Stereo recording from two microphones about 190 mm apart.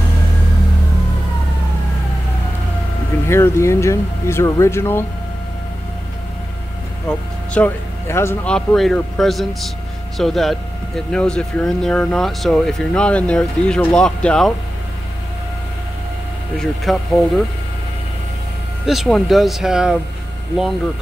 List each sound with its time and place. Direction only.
3.3 s speech: 15° left (ahead or behind)
7.1 s speech: 5° left (ahead or behind)
16.5 s speech: centre (ahead or behind)
18.9 s speech: centre (ahead or behind)